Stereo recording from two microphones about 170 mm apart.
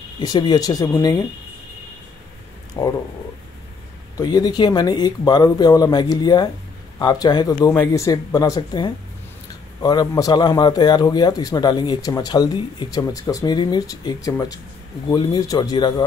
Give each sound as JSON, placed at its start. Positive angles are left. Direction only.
{"t": 0.2, "sound": "a man's voice", "side_deg": 25}
{"t": 2.8, "sound": "speech", "side_deg": 20}
{"t": 4.2, "sound": "a man's voice", "side_deg": 25}